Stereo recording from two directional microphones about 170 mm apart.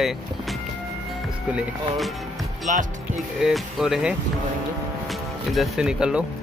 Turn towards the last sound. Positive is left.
turn(degrees=-5)  # may be behind; listen again after turning